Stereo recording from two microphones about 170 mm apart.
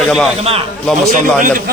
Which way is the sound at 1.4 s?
55° right (ahead or behind).